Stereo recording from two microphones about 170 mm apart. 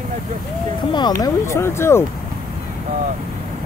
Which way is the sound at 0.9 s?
25° left (ahead or behind).